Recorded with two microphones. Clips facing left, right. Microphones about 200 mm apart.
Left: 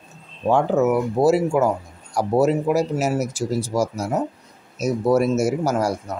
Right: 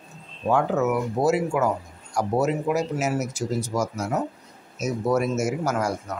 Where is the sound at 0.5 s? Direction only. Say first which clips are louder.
Left 4 dB; 30° left (ahead or behind).